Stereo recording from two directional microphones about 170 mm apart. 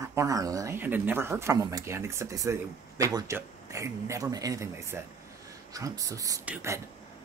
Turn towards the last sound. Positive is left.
turn(degrees=-10)  # may be behind; listen again after turning